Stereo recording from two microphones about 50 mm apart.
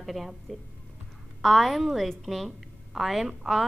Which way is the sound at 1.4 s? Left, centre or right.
Centre.